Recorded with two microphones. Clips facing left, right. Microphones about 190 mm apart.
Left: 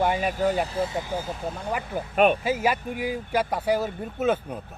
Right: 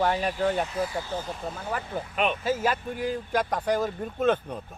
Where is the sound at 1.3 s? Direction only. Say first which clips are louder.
Left 3 dB; centre (ahead or behind).